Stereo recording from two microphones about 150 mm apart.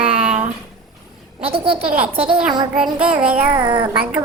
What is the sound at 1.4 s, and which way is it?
Child singing, 40° right (ahead or behind).